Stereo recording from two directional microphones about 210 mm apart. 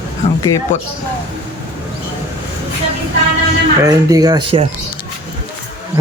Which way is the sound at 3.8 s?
15° right (ahead or behind).